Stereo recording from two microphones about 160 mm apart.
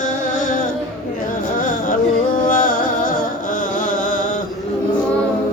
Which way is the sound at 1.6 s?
55° left (ahead or behind).